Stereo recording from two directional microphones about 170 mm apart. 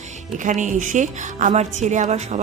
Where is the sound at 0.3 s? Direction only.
45° right (ahead or behind).